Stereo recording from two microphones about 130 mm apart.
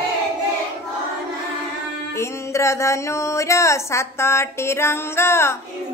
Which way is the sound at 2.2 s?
20° left (ahead or behind).